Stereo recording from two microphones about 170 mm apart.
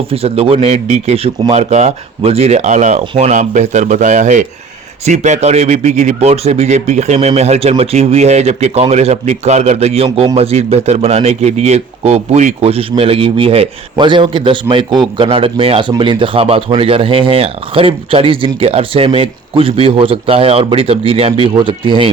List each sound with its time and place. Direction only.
0.1 s speech: 35° right (ahead or behind)